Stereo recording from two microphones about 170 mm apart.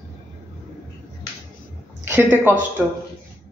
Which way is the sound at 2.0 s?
10° right (ahead or behind).